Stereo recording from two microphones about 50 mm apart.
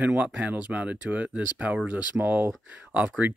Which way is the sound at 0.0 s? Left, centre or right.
Right.